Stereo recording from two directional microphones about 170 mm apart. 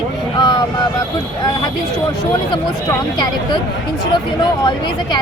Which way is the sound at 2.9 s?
25° left (ahead or behind).